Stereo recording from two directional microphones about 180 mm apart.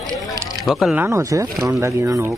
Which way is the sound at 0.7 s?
Centre (ahead or behind).